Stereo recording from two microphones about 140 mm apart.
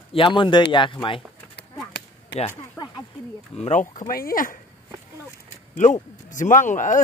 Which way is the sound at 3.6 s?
55° left (ahead or behind).